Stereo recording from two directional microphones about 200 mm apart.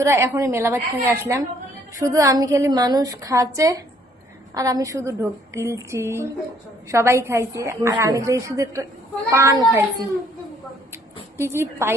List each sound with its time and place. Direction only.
0.0 s a woman's voice: 15° right (ahead or behind)
10.9 s a woman's voice: 10° right (ahead or behind)